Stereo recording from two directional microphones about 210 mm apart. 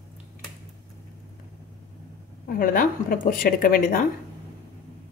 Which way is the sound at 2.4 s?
45° left (ahead or behind).